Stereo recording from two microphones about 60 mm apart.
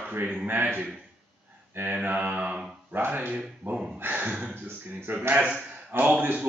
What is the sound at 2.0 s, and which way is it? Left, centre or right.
Speech, right.